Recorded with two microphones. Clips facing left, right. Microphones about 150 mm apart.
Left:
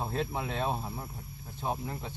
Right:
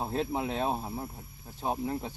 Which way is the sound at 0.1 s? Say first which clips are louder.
Right 3 dB; 35° right (ahead or behind).